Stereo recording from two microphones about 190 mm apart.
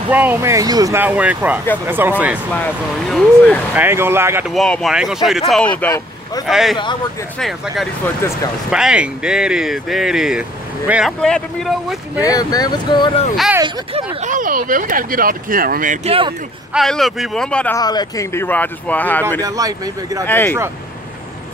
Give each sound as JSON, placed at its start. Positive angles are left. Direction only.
{"t": 0.1, "sound": "speech", "side_deg": -10}
{"t": 2.5, "sound": "speech", "side_deg": 5}
{"t": 3.7, "sound": "speech", "side_deg": -10}
{"t": 4.5, "sound": "speech", "side_deg": 0}
{"t": 5.8, "sound": "speech", "side_deg": 15}
{"t": 6.4, "sound": "speech", "side_deg": 0}
{"t": 12.2, "sound": "speech", "side_deg": 20}
{"t": 13.9, "sound": "speech", "side_deg": -40}
{"t": 16.1, "sound": "speech", "side_deg": -30}
{"t": 16.7, "sound": "speech", "side_deg": 0}
{"t": 17.7, "sound": "speech", "side_deg": 20}
{"t": 19.4, "sound": "speech", "side_deg": -20}
{"t": 20.2, "sound": "speech", "side_deg": 10}